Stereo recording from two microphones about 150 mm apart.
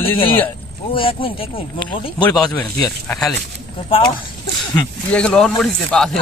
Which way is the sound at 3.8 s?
35° left (ahead or behind).